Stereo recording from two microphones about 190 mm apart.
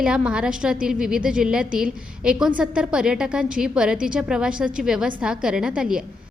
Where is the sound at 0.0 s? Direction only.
5° right (ahead or behind).